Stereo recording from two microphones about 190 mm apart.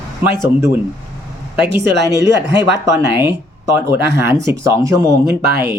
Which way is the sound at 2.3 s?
65° right (ahead or behind).